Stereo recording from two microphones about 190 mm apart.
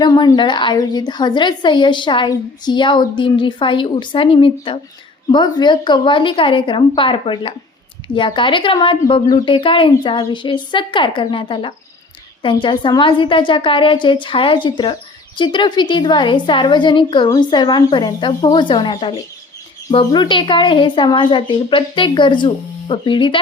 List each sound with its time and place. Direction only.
0.0 s a woman's voice: 20° left (ahead or behind)